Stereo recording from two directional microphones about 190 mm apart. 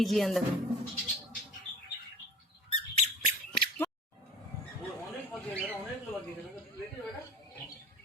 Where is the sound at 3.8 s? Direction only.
15° left (ahead or behind).